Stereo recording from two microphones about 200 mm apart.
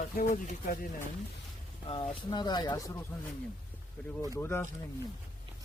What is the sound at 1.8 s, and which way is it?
Speech, 25° left (ahead or behind).